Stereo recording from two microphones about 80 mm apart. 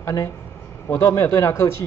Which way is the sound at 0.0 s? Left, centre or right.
Left.